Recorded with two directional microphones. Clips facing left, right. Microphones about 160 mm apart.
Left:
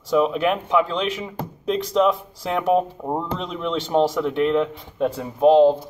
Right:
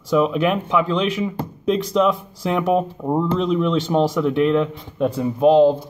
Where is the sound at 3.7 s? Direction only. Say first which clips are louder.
Right 1 dB; 30° left (ahead or behind).